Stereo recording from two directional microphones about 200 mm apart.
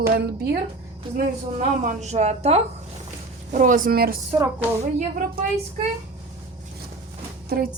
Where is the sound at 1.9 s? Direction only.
35° right (ahead or behind).